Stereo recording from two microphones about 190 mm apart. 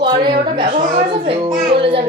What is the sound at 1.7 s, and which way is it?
Mantra, 30° right (ahead or behind).